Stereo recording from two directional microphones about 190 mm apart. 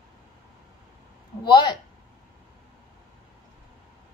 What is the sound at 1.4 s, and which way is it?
Speech, 25° left (ahead or behind).